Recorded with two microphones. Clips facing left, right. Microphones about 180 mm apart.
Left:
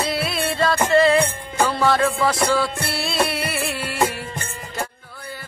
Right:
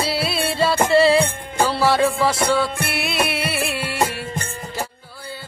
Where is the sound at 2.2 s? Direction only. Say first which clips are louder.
Right 1 dB; 25° right (ahead or behind).